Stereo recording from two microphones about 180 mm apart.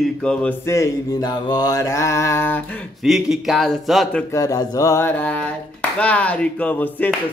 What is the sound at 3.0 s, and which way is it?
Speech, centre (ahead or behind).